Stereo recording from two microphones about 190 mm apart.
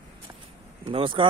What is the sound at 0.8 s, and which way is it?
Speech, 30° right (ahead or behind).